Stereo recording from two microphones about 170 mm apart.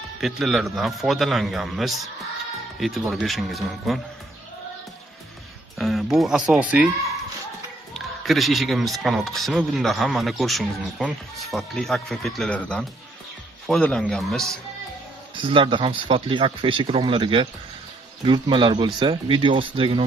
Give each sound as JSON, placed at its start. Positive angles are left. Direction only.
{"t": 0.2, "sound": "speech", "side_deg": 0}
{"t": 5.8, "sound": "speech", "side_deg": 0}
{"t": 7.9, "sound": "speech", "side_deg": 0}
{"t": 15.3, "sound": "speech", "side_deg": -30}